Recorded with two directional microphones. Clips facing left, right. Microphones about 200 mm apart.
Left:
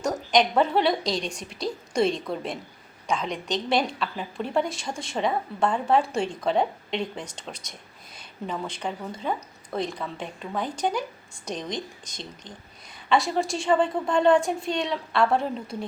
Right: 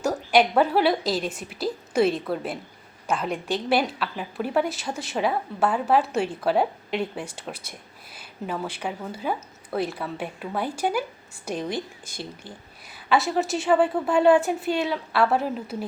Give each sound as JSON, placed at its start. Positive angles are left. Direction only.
{"t": 0.0, "sound": "a woman's voice", "side_deg": -5}